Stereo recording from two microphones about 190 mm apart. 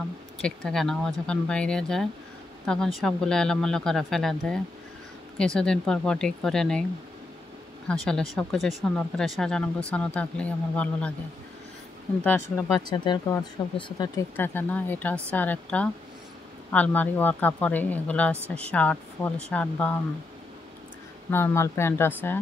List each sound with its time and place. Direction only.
0.4 s speech: 5° left (ahead or behind)
8.0 s speech: 5° left (ahead or behind)
12.2 s speech: 10° left (ahead or behind)
12.9 s speech: 25° left (ahead or behind); by 20.0 s 5° left (ahead or behind)
21.3 s speech: 15° left (ahead or behind)